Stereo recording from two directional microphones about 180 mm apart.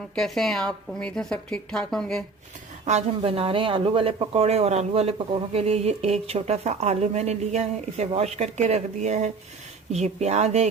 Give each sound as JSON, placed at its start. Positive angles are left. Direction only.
{"t": 0.2, "sound": "a woman's voice", "side_deg": 0}
{"t": 3.2, "sound": "speech", "side_deg": -30}